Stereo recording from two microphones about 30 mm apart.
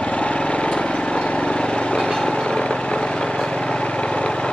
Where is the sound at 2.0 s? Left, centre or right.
Left.